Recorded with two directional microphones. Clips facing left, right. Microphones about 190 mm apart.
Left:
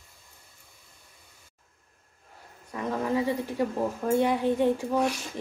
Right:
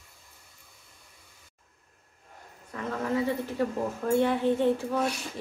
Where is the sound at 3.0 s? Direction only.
15° left (ahead or behind).